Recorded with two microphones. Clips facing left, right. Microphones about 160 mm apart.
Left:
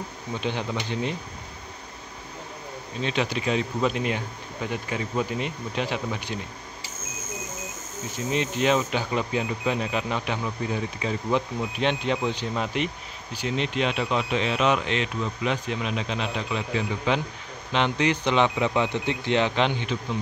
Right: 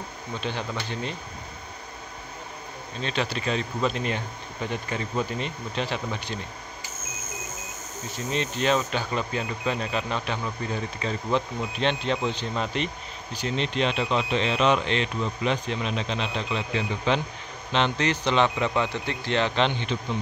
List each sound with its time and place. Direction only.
0.3 s speech: 15° left (ahead or behind)
3.0 s speech: 15° left (ahead or behind)
8.3 s speech: 15° left (ahead or behind)